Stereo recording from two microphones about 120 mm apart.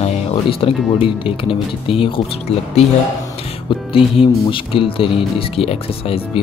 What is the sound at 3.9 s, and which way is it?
Speech, 50° left (ahead or behind).